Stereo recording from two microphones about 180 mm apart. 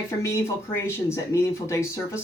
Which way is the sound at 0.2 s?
15° left (ahead or behind).